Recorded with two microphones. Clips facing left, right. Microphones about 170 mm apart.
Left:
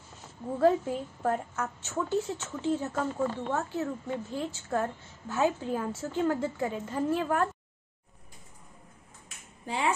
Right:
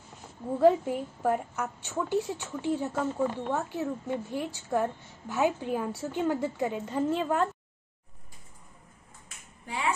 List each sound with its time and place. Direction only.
0.6 s a woman's voice: 15° right (ahead or behind)